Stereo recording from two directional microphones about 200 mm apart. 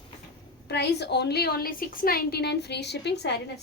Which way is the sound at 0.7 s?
55° left (ahead or behind).